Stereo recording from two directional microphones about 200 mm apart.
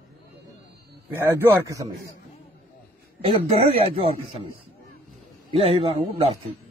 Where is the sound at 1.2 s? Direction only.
15° right (ahead or behind).